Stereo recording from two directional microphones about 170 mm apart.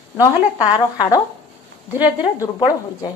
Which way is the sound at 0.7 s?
25° left (ahead or behind).